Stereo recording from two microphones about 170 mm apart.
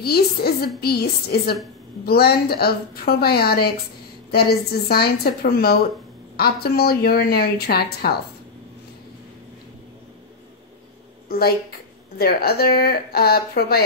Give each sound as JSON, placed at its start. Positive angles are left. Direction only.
{"t": 0.0, "sound": "a woman's voice", "side_deg": 65}
{"t": 11.2, "sound": "a woman's voice", "side_deg": 65}